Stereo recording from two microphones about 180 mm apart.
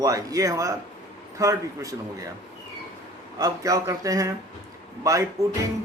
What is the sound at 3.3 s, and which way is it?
A man's voice, 20° right (ahead or behind).